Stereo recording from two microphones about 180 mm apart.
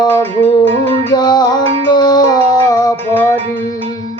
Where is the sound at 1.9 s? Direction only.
25° left (ahead or behind).